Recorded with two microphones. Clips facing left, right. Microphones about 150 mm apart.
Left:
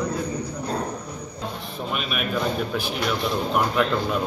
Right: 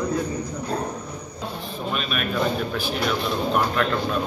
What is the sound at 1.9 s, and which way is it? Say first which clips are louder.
Speech: right 1 dB; 10° left (ahead or behind).